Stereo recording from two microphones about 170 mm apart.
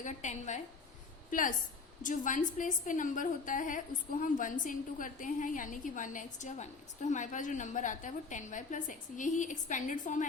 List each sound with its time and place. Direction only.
0.0 s a woman's voice: 45° left (ahead or behind)